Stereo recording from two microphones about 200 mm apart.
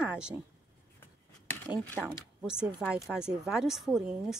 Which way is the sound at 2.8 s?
Centre (ahead or behind).